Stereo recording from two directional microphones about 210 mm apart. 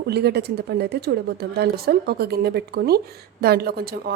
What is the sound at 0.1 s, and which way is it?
Speech, 50° right (ahead or behind).